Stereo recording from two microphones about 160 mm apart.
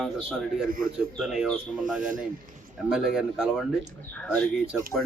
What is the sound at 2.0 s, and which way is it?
Speech, 55° right (ahead or behind).